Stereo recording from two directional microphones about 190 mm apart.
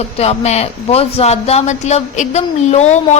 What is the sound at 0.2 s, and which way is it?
A woman's voice, 35° left (ahead or behind).